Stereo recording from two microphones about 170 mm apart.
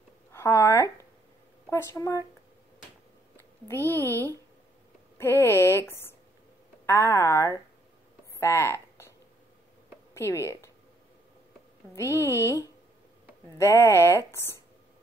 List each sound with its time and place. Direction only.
0.3 s a woman's voice: 15° left (ahead or behind)
3.6 s a woman's voice: 15° left (ahead or behind)
8.4 s a sound: 15° left (ahead or behind)
10.1 s a woman's voice: 15° left (ahead or behind)
11.9 s a woman's voice: 15° left (ahead or behind)